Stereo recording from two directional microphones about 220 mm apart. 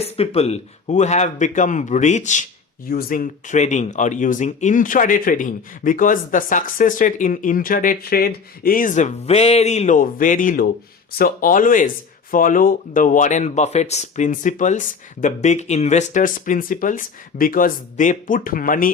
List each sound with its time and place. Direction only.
0.0 s speech: 25° left (ahead or behind)